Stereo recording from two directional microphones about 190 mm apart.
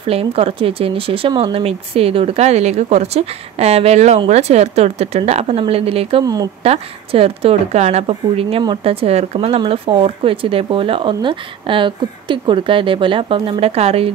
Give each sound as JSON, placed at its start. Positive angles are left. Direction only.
{"t": 0.0, "sound": "speech", "side_deg": -30}
{"t": 6.2, "sound": "a woman's voice", "side_deg": -20}
{"t": 6.6, "sound": "a woman's voice", "side_deg": -30}